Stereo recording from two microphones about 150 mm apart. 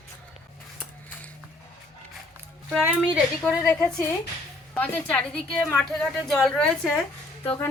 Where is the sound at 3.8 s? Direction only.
15° left (ahead or behind).